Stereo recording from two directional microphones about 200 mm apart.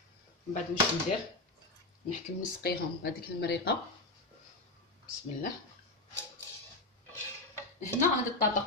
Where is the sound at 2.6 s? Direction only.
50° left (ahead or behind).